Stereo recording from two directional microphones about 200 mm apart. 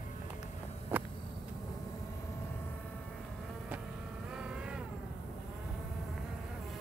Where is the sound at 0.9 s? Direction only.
10° right (ahead or behind).